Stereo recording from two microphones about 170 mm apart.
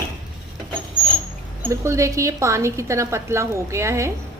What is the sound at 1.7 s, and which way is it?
A woman's voice, 15° right (ahead or behind).